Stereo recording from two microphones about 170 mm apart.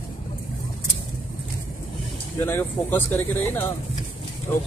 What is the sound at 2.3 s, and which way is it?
Speech, 10° left (ahead or behind).